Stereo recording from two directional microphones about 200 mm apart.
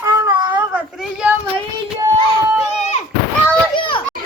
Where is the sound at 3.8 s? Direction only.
25° left (ahead or behind).